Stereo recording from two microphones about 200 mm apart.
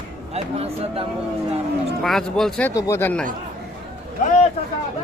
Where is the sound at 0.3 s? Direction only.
30° right (ahead or behind).